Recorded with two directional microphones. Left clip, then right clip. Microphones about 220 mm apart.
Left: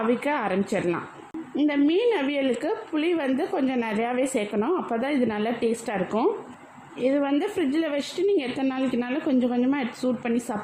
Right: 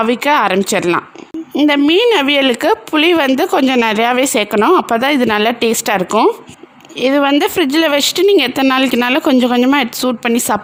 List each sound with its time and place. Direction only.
0.1 s speech: 50° right (ahead or behind)